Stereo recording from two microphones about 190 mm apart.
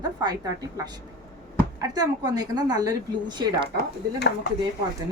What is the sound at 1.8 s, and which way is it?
A woman's voice, 20° right (ahead or behind).